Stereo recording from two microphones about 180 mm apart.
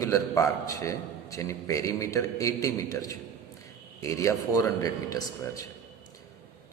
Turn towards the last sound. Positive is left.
turn(degrees=20)  # may be behind; listen again after turning